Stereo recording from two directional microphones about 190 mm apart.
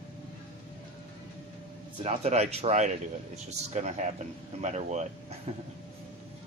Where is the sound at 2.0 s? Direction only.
35° right (ahead or behind).